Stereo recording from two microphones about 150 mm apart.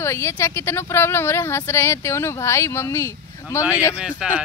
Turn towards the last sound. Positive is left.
turn(degrees=-5)  # may be behind; listen again after turning